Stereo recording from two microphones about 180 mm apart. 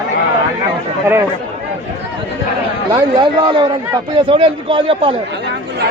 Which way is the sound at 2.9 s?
20° right (ahead or behind).